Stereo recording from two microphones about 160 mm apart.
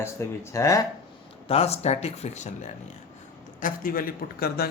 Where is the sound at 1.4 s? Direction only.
40° left (ahead or behind).